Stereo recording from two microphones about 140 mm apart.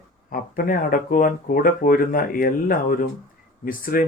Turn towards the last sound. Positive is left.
turn(degrees=85)